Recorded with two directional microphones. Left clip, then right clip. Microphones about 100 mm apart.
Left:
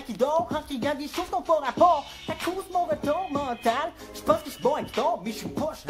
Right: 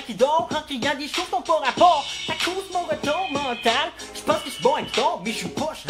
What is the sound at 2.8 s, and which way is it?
Music, 15° right (ahead or behind).